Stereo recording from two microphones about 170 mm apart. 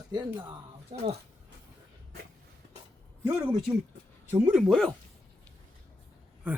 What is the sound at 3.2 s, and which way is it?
Speech, 10° right (ahead or behind).